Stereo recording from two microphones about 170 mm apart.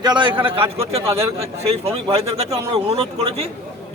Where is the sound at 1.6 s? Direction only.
35° right (ahead or behind).